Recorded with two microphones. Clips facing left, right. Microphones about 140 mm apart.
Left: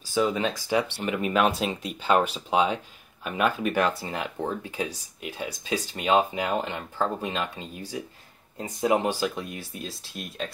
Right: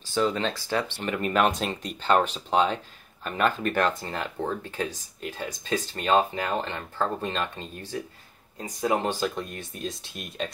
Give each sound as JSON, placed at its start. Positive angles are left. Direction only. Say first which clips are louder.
{"t": 0.1, "sound": "speech", "louder": "left 1 dB", "side_deg": 10}
{"t": 8.5, "sound": "speech", "louder": "left 2 dB", "side_deg": 20}